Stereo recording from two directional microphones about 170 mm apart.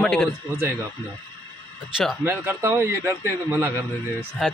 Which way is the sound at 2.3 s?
15° right (ahead or behind).